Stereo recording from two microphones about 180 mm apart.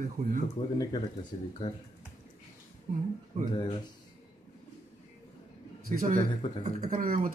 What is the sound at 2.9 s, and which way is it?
Speech, 35° right (ahead or behind).